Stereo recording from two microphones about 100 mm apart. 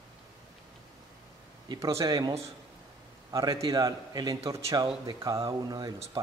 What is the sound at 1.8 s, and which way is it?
Speech, 30° right (ahead or behind).